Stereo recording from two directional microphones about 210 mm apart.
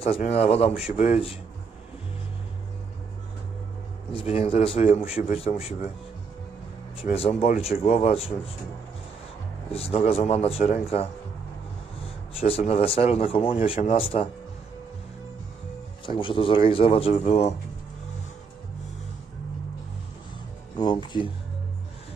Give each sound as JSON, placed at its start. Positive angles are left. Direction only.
{"t": 0.0, "sound": "speech", "side_deg": 30}
{"t": 4.1, "sound": "speech", "side_deg": 25}
{"t": 7.2, "sound": "speech", "side_deg": 30}
{"t": 9.7, "sound": "speech", "side_deg": 30}
{"t": 12.4, "sound": "speech", "side_deg": 30}
{"t": 16.1, "sound": "speech", "side_deg": 25}
{"t": 20.7, "sound": "speech", "side_deg": 20}